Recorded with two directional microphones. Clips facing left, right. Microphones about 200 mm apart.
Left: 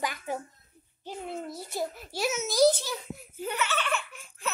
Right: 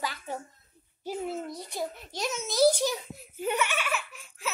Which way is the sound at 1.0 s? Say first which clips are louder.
Right 3 dB; 5° right (ahead or behind).